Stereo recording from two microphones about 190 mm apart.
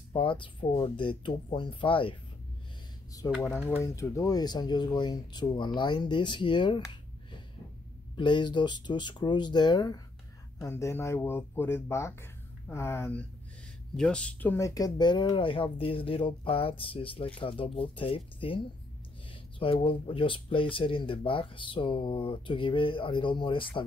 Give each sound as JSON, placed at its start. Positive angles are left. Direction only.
{"t": 0.1, "sound": "speech", "side_deg": 25}
{"t": 3.4, "sound": "speech", "side_deg": 10}
{"t": 19.6, "sound": "speech", "side_deg": 30}